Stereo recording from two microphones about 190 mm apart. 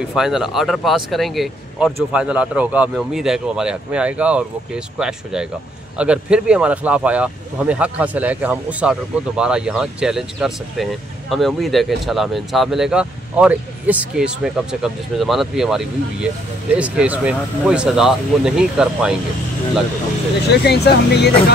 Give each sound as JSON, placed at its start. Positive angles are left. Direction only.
{"t": 0.1, "sound": "speech", "side_deg": 0}
{"t": 20.5, "sound": "speech", "side_deg": 60}